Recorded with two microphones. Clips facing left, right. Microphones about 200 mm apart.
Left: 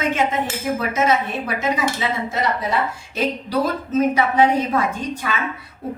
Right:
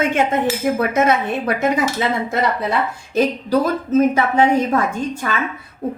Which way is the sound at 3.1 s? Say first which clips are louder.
Right 5 dB; 50° right (ahead or behind).